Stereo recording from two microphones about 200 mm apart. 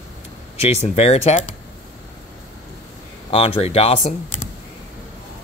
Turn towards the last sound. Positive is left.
turn(degrees=30)  # may be behind; listen again after turning